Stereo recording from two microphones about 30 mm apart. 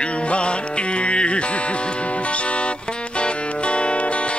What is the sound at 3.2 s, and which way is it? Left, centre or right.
Music, left.